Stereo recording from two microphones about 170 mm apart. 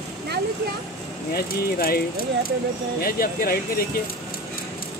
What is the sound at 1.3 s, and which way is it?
Speech, 60° left (ahead or behind).